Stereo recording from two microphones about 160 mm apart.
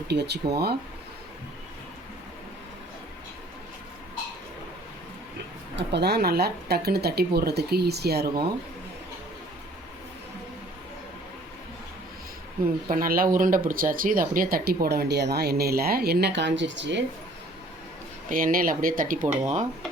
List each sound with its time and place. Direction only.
0.1 s speech: 90° right
5.7 s speech: 90° right
12.9 s speech: 65° right (ahead or behind); by 17.0 s 90° right
18.3 s speech: 60° right (ahead or behind)